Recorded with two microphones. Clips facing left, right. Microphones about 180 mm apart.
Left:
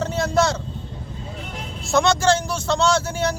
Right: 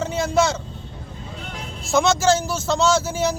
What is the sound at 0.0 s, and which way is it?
Vehicle, centre (ahead or behind).